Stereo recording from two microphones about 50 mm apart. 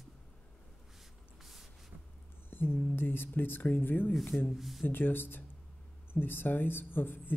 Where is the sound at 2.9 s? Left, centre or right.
Left.